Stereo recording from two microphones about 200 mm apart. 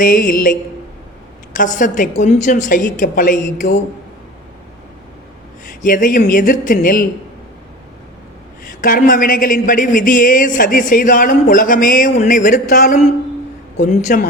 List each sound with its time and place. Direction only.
0.0 s speech: 45° left (ahead or behind)
1.5 s a woman's voice: 40° left (ahead or behind)
5.8 s speech: 40° left (ahead or behind)
8.8 s speech: 45° left (ahead or behind)